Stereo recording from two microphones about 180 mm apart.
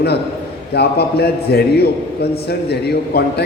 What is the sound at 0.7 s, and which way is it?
A man's voice, 65° left (ahead or behind).